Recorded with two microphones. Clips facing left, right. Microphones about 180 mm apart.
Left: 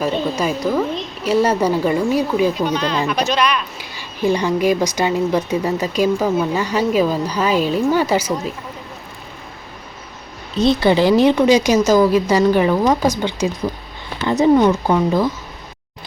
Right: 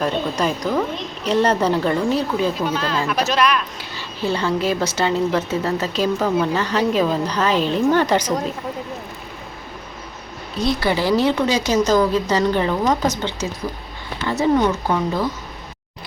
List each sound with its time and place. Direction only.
0.0 s a woman's voice: 5° left (ahead or behind)
2.6 s speech: 5° right (ahead or behind)
3.8 s a woman's voice: 15° left (ahead or behind)
10.6 s a woman's voice: 25° left (ahead or behind)